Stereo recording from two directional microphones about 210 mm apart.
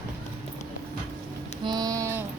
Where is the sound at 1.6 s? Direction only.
20° right (ahead or behind).